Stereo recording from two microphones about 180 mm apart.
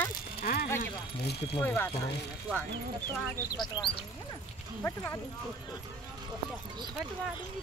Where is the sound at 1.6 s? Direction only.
10° left (ahead or behind).